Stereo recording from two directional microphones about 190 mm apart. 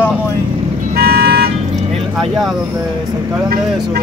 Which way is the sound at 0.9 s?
55° right (ahead or behind).